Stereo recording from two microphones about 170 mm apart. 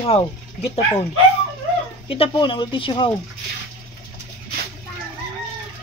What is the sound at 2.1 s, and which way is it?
Speech, 30° left (ahead or behind).